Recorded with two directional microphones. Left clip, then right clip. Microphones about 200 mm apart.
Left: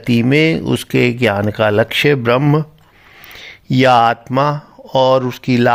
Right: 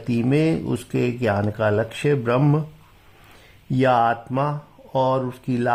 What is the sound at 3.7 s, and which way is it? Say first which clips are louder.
Speech: left 7 dB; 30° left (ahead or behind).